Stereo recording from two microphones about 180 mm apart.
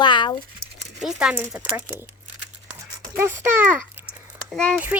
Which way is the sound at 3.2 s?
10° right (ahead or behind).